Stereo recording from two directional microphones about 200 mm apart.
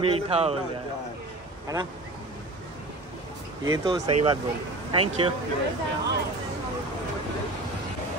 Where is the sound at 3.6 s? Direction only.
20° right (ahead or behind).